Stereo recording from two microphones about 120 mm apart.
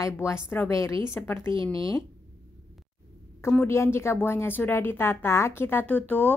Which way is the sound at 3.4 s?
20° left (ahead or behind).